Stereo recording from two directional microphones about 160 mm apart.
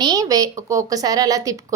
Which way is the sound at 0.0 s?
25° right (ahead or behind).